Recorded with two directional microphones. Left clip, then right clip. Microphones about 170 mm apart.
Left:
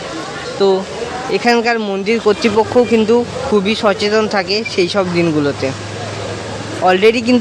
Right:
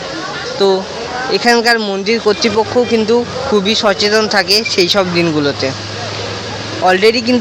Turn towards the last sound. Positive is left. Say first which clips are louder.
# right 1 dB
turn(degrees=20)  # may be behind; listen again after turning